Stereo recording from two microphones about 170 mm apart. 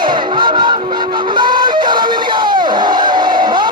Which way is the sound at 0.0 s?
25° right (ahead or behind).